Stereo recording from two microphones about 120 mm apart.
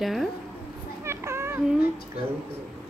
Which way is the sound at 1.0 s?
20° right (ahead or behind).